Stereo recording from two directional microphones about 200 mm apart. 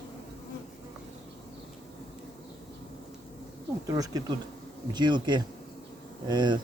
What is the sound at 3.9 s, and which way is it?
Speech, 20° right (ahead or behind).